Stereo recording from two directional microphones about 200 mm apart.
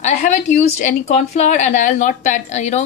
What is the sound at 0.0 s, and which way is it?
A woman's voice, 35° left (ahead or behind).